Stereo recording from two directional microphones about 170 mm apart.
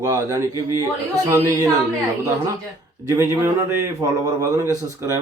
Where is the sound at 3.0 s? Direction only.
20° right (ahead or behind).